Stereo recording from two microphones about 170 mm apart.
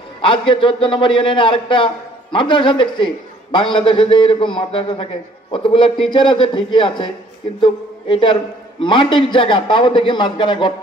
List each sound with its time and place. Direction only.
0.2 s a man's voice: 30° left (ahead or behind)